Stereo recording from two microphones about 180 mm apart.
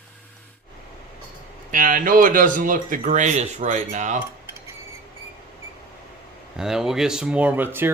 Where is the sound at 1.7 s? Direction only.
50° right (ahead or behind).